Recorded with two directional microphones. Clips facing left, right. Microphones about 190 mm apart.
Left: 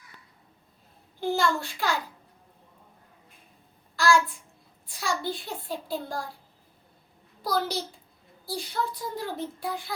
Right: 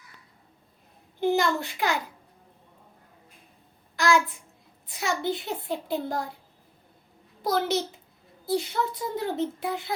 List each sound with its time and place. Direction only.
1.2 s a child's voice: 20° right (ahead or behind)
3.9 s a child's voice: 20° right (ahead or behind)
7.4 s a child's voice: 20° right (ahead or behind)